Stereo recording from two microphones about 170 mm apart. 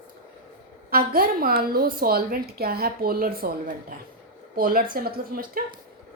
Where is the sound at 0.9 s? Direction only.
60° right (ahead or behind).